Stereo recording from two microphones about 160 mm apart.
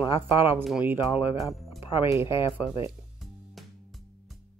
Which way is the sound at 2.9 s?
Centre (ahead or behind).